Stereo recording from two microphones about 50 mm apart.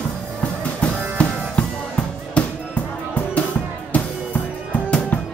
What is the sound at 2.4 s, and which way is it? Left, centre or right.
Music, left.